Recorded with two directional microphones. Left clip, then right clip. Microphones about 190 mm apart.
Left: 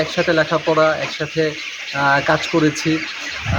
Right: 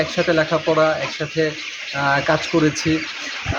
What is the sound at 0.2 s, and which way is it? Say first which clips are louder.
Speech: left 2 dB; 5° left (ahead or behind).